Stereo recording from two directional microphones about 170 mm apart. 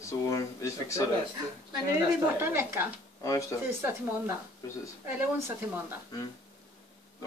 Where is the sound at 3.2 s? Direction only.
20° left (ahead or behind).